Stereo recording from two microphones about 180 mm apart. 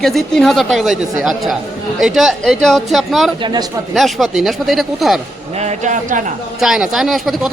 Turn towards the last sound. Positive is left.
turn(degrees=0)  # may be behind; listen again after turning